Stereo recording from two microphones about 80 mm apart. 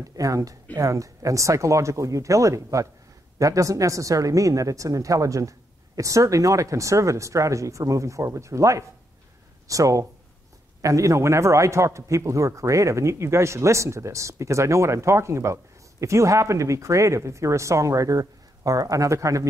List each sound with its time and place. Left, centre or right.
0.0 s a man's voice: right